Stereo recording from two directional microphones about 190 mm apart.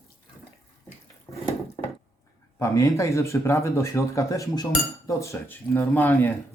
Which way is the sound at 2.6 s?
15° left (ahead or behind).